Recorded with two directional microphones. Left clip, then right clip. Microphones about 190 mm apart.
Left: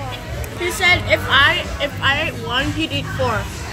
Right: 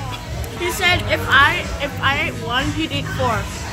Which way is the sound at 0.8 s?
Centre (ahead or behind).